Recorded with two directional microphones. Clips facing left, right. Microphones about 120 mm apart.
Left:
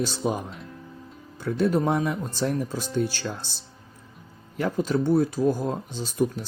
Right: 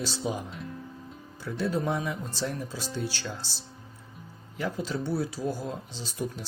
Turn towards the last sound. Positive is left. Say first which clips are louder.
# left 9 dB
turn(degrees=50)  # may be behind; listen again after turning